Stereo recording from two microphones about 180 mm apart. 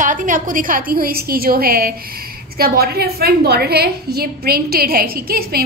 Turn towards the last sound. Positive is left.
turn(degrees=-60)  # may be behind; listen again after turning